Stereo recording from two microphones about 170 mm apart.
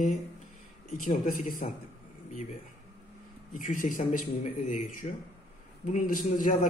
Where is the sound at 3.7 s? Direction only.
50° left (ahead or behind).